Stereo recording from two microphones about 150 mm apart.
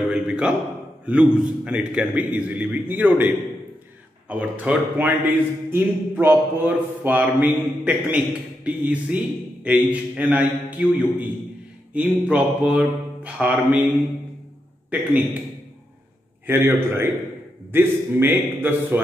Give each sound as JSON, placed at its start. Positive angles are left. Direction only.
{"t": 0.1, "sound": "a man's voice", "side_deg": -5}
{"t": 16.4, "sound": "a man's voice", "side_deg": -15}